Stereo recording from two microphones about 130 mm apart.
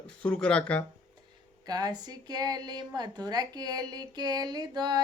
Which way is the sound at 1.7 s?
30° right (ahead or behind).